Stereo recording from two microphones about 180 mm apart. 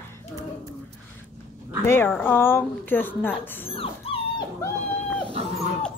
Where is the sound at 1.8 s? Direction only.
15° left (ahead or behind).